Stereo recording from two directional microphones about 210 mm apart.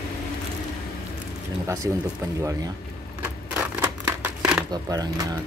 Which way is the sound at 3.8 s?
10° right (ahead or behind).